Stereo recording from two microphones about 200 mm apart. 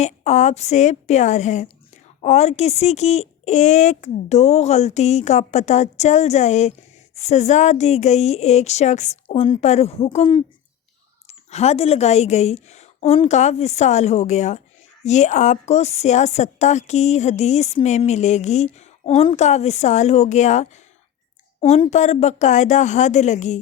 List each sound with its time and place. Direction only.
0.0 s a woman's voice: 35° left (ahead or behind)